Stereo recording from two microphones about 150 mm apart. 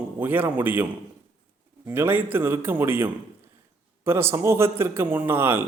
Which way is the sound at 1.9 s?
15° right (ahead or behind).